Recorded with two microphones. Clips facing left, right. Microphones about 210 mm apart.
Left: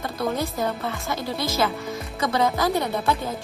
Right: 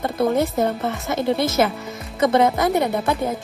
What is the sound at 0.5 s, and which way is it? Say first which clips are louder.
Speech: right 5 dB; 25° right (ahead or behind).